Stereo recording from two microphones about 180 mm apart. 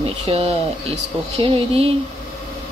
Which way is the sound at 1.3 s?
30° right (ahead or behind).